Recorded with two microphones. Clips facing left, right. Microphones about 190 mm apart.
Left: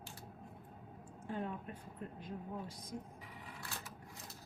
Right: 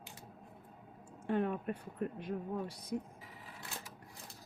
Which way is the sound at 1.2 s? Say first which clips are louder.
Right 8 dB; 70° right (ahead or behind).